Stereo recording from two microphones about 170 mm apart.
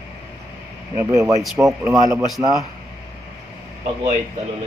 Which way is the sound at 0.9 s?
15° right (ahead or behind).